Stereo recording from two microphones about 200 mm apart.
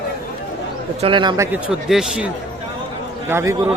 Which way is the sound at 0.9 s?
25° right (ahead or behind).